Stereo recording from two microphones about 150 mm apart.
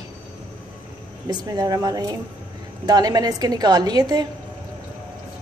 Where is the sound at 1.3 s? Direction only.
25° right (ahead or behind).